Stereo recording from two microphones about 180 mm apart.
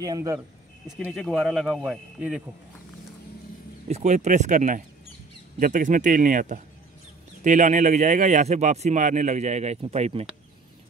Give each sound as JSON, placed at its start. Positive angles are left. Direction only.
{"t": 0.0, "sound": "speech", "side_deg": -20}
{"t": 0.8, "sound": "speech", "side_deg": 5}
{"t": 3.9, "sound": "a man's voice", "side_deg": -40}